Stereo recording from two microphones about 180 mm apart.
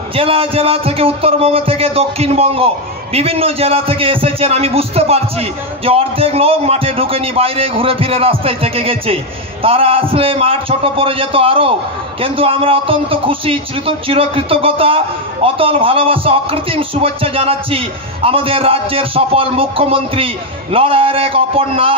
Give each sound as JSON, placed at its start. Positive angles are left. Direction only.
{"t": 0.1, "sound": "a man's voice", "side_deg": -30}